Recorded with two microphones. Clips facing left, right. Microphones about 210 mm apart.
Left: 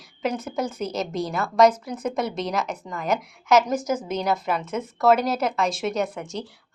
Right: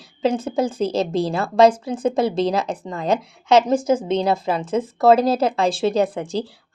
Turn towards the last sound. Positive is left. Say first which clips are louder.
# right 7 dB
turn(degrees=-30)  # may be behind; listen again after turning